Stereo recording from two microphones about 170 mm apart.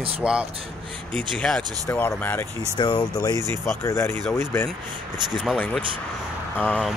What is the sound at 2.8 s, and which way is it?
Speech, 25° left (ahead or behind).